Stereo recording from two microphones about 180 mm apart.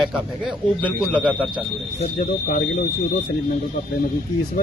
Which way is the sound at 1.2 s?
5° right (ahead or behind).